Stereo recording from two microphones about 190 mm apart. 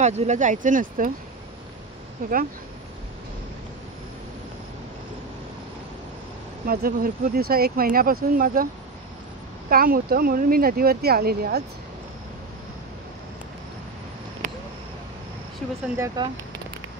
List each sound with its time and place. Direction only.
0.0 s speech: 40° right (ahead or behind)
2.2 s speech: 45° right (ahead or behind)
6.6 s speech: 50° right (ahead or behind)
9.7 s speech: 50° right (ahead or behind)
14.4 s a sound: 45° right (ahead or behind)
16.2 s speech: 25° right (ahead or behind)